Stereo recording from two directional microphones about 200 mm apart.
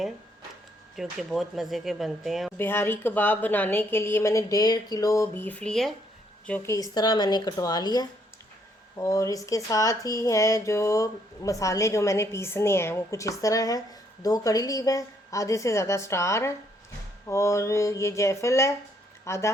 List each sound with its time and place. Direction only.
0.9 s speech: centre (ahead or behind)
2.6 s speech: 10° left (ahead or behind)